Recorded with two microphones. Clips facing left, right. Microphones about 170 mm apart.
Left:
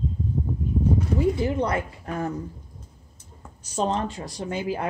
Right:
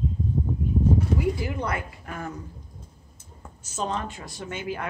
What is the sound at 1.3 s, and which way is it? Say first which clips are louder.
Speech: left 5 dB; 30° left (ahead or behind).